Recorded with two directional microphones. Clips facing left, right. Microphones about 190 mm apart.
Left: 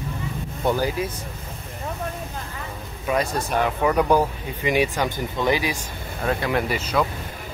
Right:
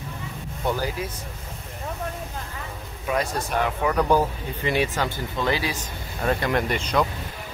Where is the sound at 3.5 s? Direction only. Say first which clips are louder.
Left 3 dB; 15° left (ahead or behind).